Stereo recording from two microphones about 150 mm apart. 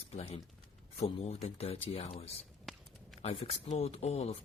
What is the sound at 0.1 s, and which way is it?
Speech, 40° left (ahead or behind).